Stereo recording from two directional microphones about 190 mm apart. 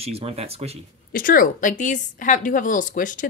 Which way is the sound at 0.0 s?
30° right (ahead or behind).